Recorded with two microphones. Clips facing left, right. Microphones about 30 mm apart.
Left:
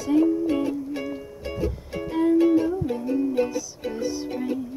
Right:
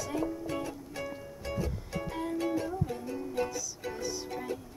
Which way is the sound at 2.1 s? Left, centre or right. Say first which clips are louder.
Left 14 dB; left.